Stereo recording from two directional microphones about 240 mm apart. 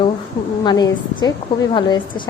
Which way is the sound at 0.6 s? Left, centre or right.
Centre.